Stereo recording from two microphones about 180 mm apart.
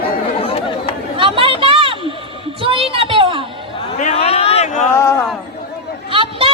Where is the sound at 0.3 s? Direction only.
30° left (ahead or behind).